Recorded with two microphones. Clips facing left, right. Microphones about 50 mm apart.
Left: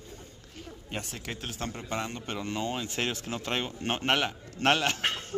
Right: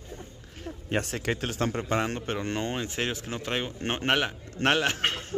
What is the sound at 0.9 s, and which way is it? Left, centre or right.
A man's voice, right.